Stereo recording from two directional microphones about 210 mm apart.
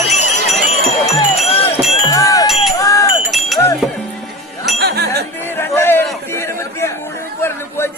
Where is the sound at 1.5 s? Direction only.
30° left (ahead or behind).